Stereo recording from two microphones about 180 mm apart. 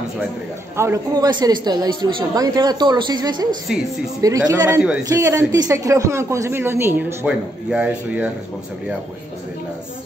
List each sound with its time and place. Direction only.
0.7 s a woman's voice: 15° right (ahead or behind)